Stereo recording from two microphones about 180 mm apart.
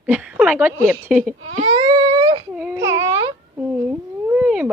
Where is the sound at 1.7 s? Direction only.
25° right (ahead or behind).